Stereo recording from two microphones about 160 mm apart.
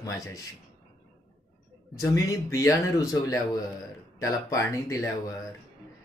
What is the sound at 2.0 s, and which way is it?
A man's voice, 20° left (ahead or behind).